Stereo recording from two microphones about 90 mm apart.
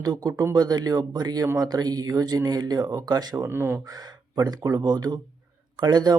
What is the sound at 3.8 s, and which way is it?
Speech, 45° right (ahead or behind).